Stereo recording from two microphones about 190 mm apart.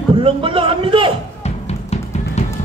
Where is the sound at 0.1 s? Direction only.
30° right (ahead or behind).